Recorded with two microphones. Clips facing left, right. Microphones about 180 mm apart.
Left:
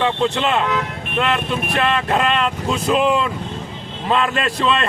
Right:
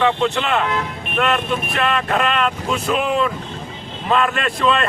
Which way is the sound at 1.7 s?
30° left (ahead or behind).